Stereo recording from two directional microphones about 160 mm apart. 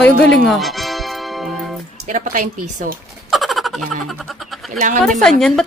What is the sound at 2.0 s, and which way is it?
Speech, 55° right (ahead or behind).